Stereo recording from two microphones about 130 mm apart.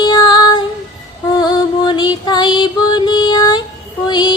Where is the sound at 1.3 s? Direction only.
30° left (ahead or behind).